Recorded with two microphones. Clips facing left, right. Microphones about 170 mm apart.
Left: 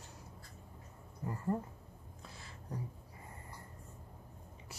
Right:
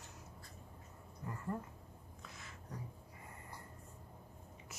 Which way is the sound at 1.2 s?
30° left (ahead or behind).